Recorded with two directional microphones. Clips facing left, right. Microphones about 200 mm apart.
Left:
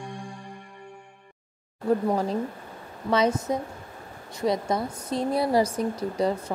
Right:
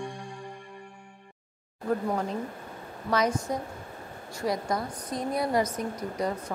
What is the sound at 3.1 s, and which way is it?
A woman's voice, 25° left (ahead or behind).